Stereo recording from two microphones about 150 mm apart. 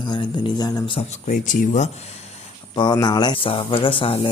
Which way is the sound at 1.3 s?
55° left (ahead or behind).